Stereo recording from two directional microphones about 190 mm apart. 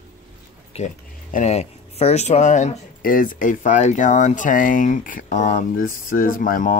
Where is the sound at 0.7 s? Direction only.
30° left (ahead or behind).